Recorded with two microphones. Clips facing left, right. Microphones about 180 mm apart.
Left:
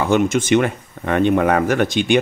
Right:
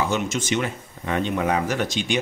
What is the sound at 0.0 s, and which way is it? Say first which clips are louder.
Speech: left 8 dB; 55° left (ahead or behind).